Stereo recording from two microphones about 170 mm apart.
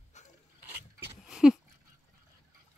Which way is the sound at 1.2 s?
5° right (ahead or behind).